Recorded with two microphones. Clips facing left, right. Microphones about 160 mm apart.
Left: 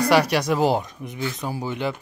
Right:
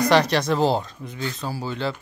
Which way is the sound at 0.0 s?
10° left (ahead or behind).